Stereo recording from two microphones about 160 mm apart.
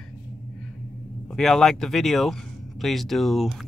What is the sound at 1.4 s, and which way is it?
Speech, centre (ahead or behind).